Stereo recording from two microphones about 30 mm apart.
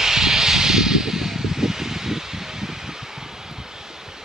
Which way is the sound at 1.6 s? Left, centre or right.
Centre.